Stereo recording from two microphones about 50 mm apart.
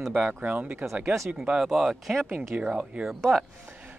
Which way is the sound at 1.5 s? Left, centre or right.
Centre.